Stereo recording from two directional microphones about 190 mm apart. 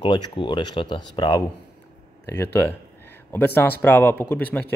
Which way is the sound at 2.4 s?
10° left (ahead or behind).